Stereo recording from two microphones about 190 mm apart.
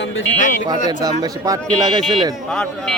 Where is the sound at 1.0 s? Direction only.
20° right (ahead or behind).